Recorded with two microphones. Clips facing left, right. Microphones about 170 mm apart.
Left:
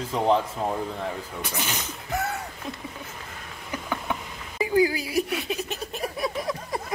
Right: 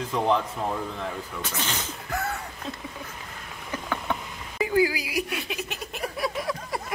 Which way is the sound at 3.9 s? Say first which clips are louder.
Even; 15° left (ahead or behind).